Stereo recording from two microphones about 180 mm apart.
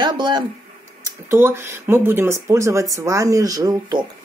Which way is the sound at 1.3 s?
15° right (ahead or behind).